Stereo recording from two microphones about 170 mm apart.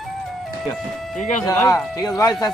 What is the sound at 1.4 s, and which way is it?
Speech, 20° left (ahead or behind).